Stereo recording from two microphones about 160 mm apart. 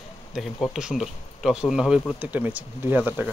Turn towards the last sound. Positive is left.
turn(degrees=-10)  # may be behind; listen again after turning